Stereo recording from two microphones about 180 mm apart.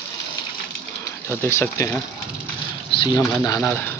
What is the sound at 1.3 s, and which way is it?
Speech, 15° left (ahead or behind).